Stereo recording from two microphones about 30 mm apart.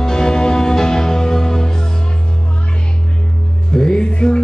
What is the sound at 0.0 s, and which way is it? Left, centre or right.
Music, left.